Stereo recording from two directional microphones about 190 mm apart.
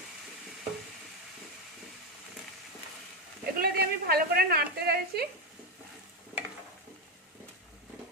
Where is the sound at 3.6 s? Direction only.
55° right (ahead or behind).